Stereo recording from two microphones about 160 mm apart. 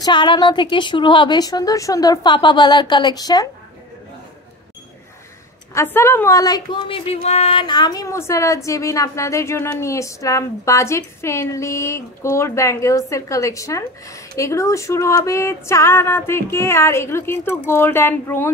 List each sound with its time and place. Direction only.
0.0 s a woman's voice: 30° left (ahead or behind)
5.8 s a woman's voice: 15° left (ahead or behind)